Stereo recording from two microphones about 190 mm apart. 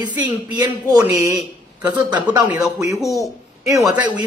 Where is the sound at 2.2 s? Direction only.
10° right (ahead or behind).